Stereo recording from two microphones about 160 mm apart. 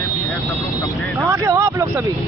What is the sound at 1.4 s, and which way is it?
Speech, 20° right (ahead or behind).